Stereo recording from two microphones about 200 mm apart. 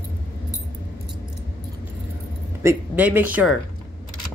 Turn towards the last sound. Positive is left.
turn(degrees=-5)  # may be behind; listen again after turning